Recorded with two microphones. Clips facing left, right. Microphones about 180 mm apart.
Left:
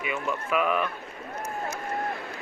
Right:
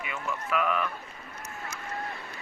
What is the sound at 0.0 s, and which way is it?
Speech, 15° left (ahead or behind).